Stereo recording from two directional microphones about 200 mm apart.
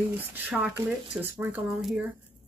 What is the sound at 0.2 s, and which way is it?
Speech, 10° right (ahead or behind).